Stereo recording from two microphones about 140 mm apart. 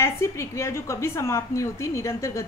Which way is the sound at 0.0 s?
20° left (ahead or behind).